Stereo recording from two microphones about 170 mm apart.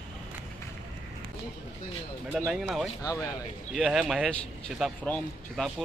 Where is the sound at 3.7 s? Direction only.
5° right (ahead or behind).